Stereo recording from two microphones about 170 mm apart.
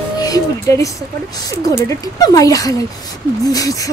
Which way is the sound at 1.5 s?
20° left (ahead or behind).